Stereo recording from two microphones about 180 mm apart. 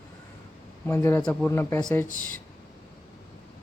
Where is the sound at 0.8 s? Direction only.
10° left (ahead or behind).